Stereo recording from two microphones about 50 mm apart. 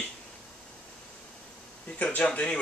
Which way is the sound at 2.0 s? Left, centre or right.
Left.